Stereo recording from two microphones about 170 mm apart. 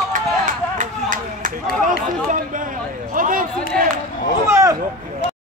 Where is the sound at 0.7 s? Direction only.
50° right (ahead or behind).